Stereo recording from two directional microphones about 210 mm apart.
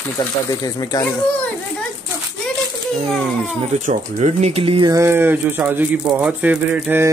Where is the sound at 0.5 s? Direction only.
15° left (ahead or behind).